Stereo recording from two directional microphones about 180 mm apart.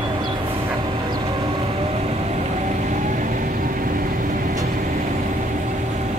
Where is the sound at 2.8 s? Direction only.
50° right (ahead or behind).